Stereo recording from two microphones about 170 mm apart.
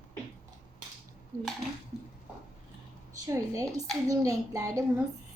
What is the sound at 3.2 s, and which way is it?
A woman's voice, 20° right (ahead or behind).